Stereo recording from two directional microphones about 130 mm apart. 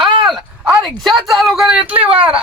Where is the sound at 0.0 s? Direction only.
35° right (ahead or behind).